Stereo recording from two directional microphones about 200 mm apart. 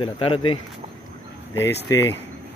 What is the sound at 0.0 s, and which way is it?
Speech, 25° left (ahead or behind).